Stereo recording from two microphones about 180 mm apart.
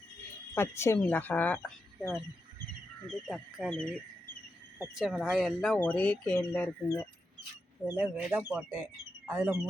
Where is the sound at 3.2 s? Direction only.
Centre (ahead or behind).